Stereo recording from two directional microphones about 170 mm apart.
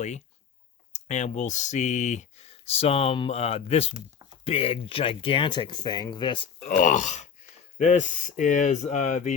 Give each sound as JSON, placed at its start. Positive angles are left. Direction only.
{"t": 0.9, "sound": "speech", "side_deg": 45}
{"t": 6.7, "sound": "speech", "side_deg": 50}